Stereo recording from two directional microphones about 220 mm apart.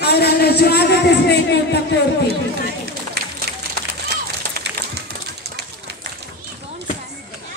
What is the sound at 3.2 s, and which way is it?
Run, 50° right (ahead or behind).